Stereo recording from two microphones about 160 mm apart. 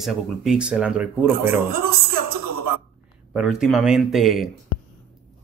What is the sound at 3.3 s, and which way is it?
Speech, centre (ahead or behind).